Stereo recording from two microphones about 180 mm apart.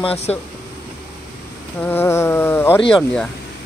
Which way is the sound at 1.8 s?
10° left (ahead or behind).